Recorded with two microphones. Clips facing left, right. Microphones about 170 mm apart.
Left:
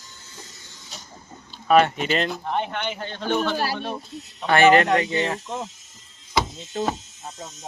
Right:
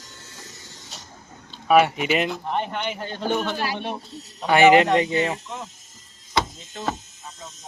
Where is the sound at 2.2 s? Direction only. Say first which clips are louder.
Even; centre (ahead or behind).